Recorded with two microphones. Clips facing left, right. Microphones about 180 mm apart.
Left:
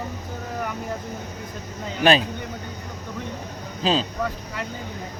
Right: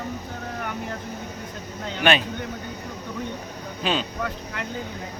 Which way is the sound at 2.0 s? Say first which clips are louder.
Left 3 dB; 35° left (ahead or behind).